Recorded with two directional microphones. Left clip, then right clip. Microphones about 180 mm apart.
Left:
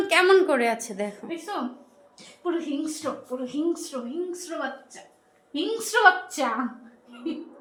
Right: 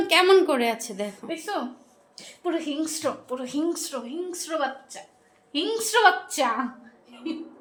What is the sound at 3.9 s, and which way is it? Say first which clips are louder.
Speech: even; 15° right (ahead or behind).